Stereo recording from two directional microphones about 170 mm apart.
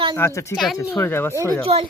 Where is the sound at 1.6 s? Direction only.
35° right (ahead or behind).